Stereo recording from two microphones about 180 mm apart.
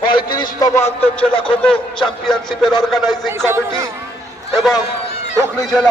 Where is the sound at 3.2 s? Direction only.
15° right (ahead or behind).